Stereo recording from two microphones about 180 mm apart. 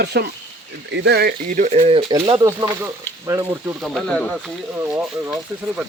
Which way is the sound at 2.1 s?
20° right (ahead or behind).